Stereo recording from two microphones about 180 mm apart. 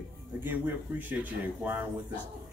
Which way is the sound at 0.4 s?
10° right (ahead or behind).